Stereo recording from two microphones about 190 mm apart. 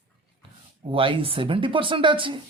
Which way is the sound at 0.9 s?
30° right (ahead or behind).